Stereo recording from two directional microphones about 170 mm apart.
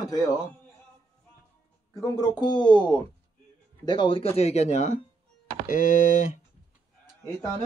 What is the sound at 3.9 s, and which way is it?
Speech, 30° left (ahead or behind).